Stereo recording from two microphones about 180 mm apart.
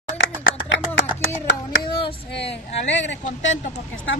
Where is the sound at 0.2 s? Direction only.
90° left.